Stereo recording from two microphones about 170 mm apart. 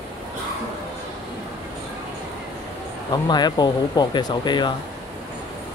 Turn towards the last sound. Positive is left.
turn(degrees=25)  # may be behind; listen again after turning